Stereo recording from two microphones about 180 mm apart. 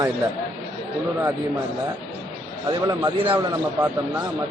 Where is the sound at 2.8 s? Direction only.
25° right (ahead or behind).